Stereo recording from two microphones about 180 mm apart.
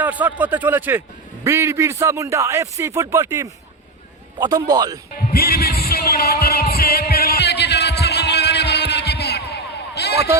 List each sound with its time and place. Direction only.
0.0 s a man's voice: 10° right (ahead or behind)
5.3 s music: 60° left (ahead or behind)